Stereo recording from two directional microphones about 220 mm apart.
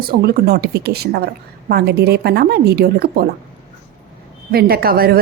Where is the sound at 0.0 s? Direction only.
45° right (ahead or behind).